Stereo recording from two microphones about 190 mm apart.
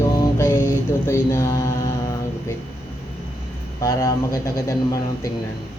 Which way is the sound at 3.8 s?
15° left (ahead or behind).